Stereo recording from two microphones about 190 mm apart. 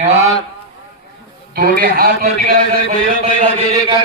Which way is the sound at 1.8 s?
50° right (ahead or behind).